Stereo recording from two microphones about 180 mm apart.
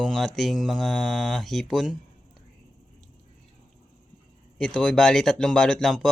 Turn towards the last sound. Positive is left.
turn(degrees=0)  # may be behind; listen again after turning